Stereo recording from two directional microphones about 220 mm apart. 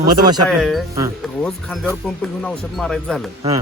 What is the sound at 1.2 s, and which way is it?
Speech, centre (ahead or behind).